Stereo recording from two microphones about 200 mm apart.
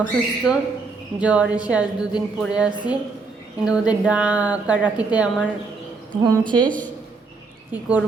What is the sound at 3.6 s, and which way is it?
A woman's voice, 5° right (ahead or behind).